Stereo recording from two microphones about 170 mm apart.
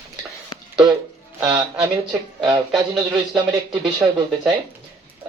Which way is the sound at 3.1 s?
20° right (ahead or behind).